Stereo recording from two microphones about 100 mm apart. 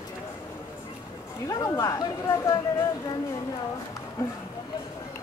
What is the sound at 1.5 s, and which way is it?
Speech, 35° left (ahead or behind).